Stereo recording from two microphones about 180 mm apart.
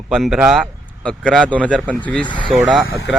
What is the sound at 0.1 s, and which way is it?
Speech, centre (ahead or behind).